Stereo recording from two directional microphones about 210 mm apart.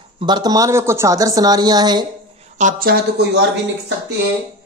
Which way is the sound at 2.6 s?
40° right (ahead or behind).